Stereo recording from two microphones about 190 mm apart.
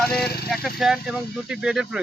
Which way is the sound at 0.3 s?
55° left (ahead or behind).